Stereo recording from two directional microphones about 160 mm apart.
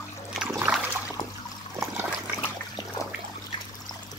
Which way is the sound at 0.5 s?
5° right (ahead or behind).